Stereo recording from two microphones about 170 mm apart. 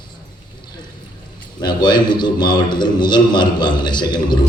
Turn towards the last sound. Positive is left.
turn(degrees=25)  # may be behind; listen again after turning